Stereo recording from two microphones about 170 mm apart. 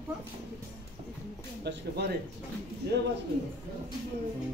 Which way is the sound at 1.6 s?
85° right.